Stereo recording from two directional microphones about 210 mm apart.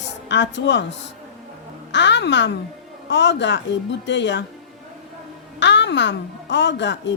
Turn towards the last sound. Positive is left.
turn(degrees=55)  # may be behind; listen again after turning